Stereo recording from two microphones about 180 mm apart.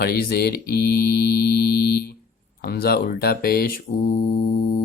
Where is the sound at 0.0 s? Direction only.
60° left (ahead or behind).